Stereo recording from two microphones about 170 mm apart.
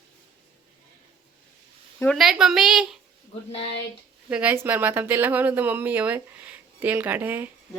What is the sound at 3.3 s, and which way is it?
Speech, 35° left (ahead or behind).